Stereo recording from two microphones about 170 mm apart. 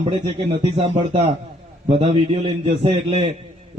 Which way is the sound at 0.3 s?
30° right (ahead or behind).